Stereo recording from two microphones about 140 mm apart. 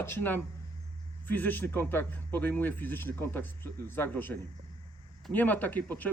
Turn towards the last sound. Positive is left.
turn(degrees=10)  # may be behind; listen again after turning